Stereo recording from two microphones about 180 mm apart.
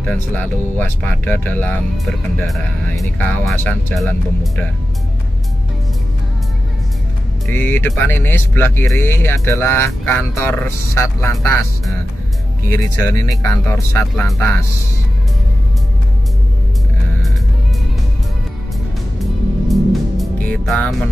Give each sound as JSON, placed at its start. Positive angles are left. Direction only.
{"t": 0.7, "sound": "speech", "side_deg": 10}
{"t": 7.5, "sound": "speech", "side_deg": 10}
{"t": 12.6, "sound": "speech", "side_deg": 15}
{"t": 14.1, "sound": "speech", "side_deg": 5}
{"t": 19.7, "sound": "music", "side_deg": 0}